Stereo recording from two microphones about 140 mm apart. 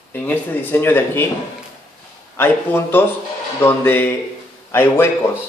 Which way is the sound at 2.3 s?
15° left (ahead or behind).